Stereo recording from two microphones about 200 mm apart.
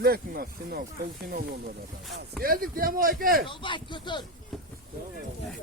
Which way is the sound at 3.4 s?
25° left (ahead or behind).